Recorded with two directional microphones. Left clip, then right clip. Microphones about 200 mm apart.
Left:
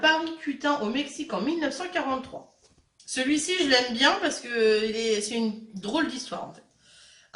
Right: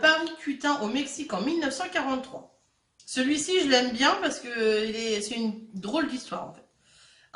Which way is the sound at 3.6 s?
50° right (ahead or behind).